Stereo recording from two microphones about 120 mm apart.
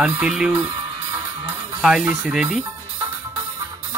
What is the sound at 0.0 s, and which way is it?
Speech, 5° right (ahead or behind).